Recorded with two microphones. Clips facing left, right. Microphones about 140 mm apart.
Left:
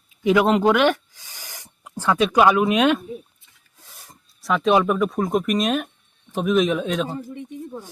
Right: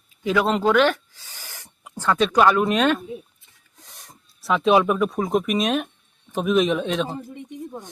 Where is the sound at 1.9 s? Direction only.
10° left (ahead or behind).